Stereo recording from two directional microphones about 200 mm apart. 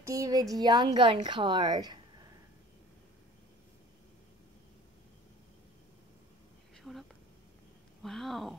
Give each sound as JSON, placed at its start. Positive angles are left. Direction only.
{"t": 0.0, "sound": "a woman's voice", "side_deg": -15}
{"t": 6.8, "sound": "a sound", "side_deg": 0}
{"t": 8.0, "sound": "speech", "side_deg": 0}